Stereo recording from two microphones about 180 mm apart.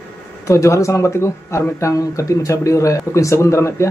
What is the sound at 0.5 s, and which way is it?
A man's voice, 15° left (ahead or behind).